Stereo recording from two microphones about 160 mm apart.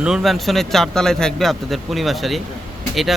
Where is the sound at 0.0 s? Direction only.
Centre (ahead or behind).